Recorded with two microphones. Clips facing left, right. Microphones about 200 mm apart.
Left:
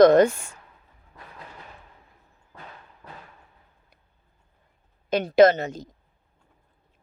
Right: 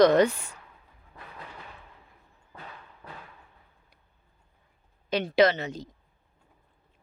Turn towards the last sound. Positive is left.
turn(degrees=45)  # may be behind; listen again after turning